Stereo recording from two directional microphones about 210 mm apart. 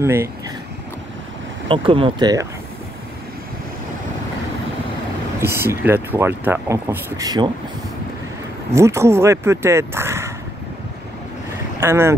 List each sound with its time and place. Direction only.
0.0 s speech: 15° right (ahead or behind)
1.7 s speech: 25° right (ahead or behind)
5.4 s speech: 10° right (ahead or behind)
8.7 s speech: 15° right (ahead or behind)
11.8 s speech: 10° right (ahead or behind)